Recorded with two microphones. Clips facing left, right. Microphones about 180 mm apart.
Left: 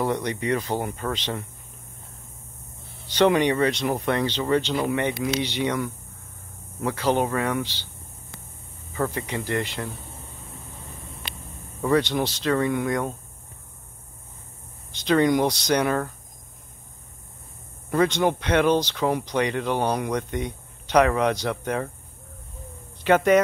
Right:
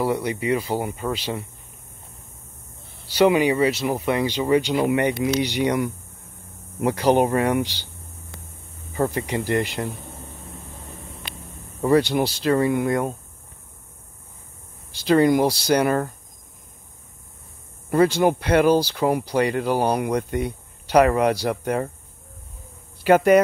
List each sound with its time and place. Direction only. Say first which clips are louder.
0.0 s speech: right 2 dB; 10° right (ahead or behind)
3.1 s speech: right 2 dB; 10° right (ahead or behind)
7.0 s speech: right 5 dB; 15° right (ahead or behind)
8.9 s speech: right 4 dB; 30° right (ahead or behind)
9.2 s speech: right 4 dB; 10° right (ahead or behind)
11.8 s speech: right 3 dB; 10° right (ahead or behind)
14.9 s speech: right 3 dB; 5° right (ahead or behind)
17.8 s speech: right 4 dB; 5° right (ahead or behind)
23.0 s speech: right 3 dB; 10° right (ahead or behind)